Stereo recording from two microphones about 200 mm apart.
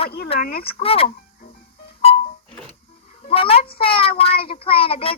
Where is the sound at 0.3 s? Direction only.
45° left (ahead or behind).